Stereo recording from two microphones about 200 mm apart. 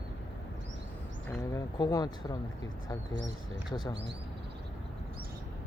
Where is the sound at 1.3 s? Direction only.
15° left (ahead or behind).